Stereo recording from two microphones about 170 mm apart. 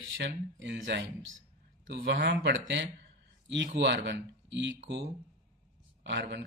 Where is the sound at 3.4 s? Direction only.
90° right.